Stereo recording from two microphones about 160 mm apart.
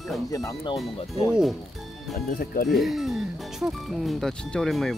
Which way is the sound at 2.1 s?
65° left (ahead or behind).